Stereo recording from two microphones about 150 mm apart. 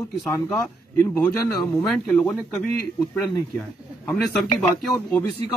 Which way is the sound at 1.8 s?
5° left (ahead or behind).